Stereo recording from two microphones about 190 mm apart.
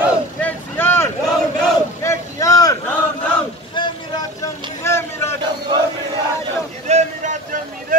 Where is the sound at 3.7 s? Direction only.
25° left (ahead or behind).